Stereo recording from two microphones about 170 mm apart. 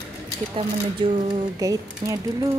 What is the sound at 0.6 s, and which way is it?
Speech, 30° right (ahead or behind).